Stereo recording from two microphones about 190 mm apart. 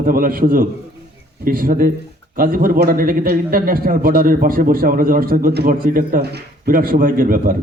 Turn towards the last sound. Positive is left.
turn(degrees=-50)  # may be behind; listen again after turning